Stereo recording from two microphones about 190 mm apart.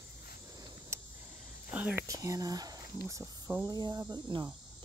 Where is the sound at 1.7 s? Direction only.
5° right (ahead or behind).